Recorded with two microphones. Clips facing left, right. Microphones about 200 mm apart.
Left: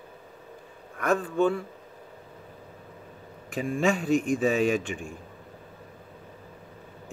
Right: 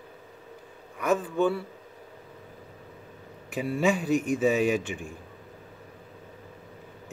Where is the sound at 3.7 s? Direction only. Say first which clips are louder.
Even; 5° right (ahead or behind).